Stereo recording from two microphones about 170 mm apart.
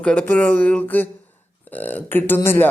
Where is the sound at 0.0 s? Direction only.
5° left (ahead or behind).